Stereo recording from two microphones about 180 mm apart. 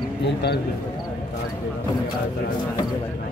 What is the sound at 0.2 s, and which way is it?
Speech, 70° left (ahead or behind).